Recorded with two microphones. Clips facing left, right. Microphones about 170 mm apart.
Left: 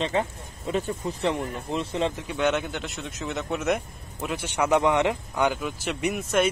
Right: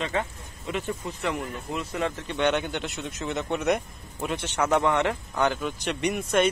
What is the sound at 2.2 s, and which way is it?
Speech, centre (ahead or behind).